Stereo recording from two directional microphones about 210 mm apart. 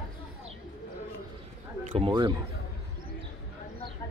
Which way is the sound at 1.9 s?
25° right (ahead or behind).